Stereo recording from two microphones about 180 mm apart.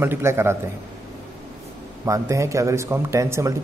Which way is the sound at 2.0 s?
15° right (ahead or behind).